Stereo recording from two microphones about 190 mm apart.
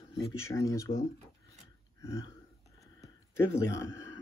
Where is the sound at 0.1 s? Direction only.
15° left (ahead or behind).